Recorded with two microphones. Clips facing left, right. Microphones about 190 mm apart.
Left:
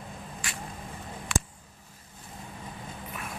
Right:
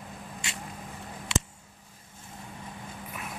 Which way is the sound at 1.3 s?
25° right (ahead or behind).